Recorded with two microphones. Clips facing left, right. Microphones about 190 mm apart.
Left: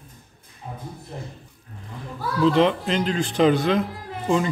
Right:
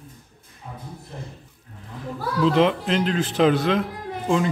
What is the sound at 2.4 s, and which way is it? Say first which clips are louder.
Speech: left 1 dB; centre (ahead or behind).